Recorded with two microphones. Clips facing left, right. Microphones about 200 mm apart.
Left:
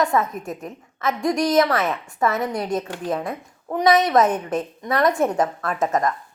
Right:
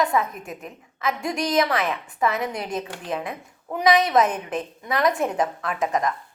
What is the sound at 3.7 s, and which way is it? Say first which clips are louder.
Speech: left 2 dB; centre (ahead or behind).